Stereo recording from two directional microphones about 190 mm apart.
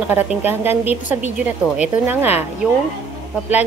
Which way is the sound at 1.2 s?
5° right (ahead or behind).